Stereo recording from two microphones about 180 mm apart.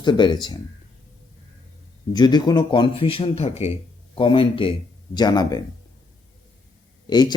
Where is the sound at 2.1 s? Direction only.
25° left (ahead or behind).